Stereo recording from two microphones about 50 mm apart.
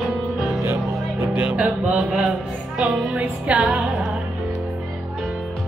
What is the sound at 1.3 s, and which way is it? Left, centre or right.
Music, right.